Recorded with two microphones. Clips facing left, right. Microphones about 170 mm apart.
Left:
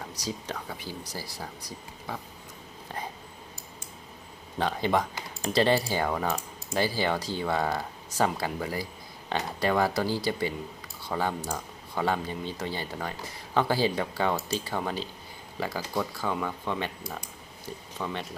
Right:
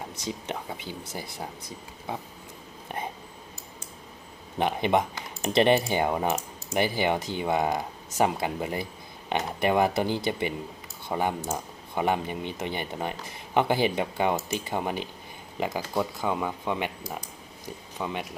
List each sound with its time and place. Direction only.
0.3 s speech: 25° right (ahead or behind)
4.5 s speech: 20° right (ahead or behind)
17.9 s speech: 15° right (ahead or behind)